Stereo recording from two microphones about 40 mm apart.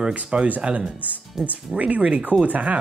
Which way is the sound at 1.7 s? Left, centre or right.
Right.